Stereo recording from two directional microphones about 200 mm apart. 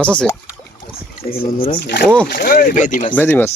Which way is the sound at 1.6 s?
45° left (ahead or behind).